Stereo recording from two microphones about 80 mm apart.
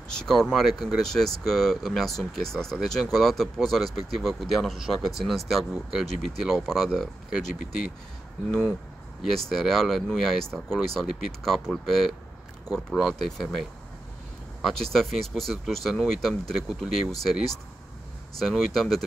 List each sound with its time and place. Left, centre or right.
0.1 s speech: centre
9.2 s speech: centre
14.6 s speech: centre